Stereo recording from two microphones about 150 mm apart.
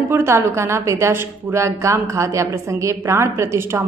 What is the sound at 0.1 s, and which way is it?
A woman's voice, 15° right (ahead or behind).